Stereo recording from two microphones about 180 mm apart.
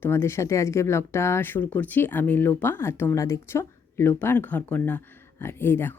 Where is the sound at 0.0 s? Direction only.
15° left (ahead or behind).